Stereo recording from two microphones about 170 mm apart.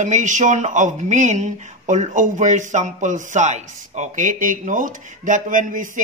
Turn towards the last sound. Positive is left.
turn(degrees=-50)  # may be behind; listen again after turning